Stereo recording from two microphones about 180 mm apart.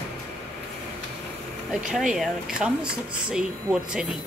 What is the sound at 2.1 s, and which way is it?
Speech, 5° right (ahead or behind).